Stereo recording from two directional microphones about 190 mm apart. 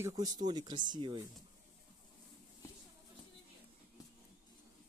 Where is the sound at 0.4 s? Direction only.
20° right (ahead or behind).